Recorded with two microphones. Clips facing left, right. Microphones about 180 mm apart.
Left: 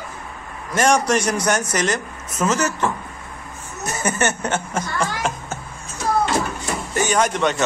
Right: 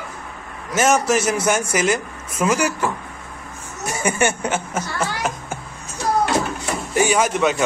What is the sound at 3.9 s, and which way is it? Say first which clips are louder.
Speech: right 2 dB; 10° right (ahead or behind).